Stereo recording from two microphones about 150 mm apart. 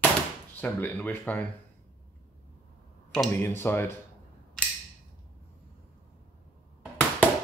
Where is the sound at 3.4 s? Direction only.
15° left (ahead or behind).